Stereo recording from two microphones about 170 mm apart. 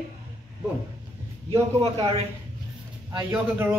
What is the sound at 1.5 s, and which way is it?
Speech, 20° right (ahead or behind).